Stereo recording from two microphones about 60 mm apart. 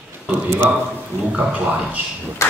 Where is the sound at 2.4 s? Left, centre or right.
Left.